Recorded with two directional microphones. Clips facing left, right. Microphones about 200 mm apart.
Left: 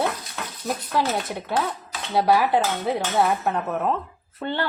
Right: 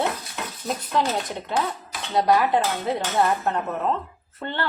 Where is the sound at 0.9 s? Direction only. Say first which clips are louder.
Even; 5° left (ahead or behind).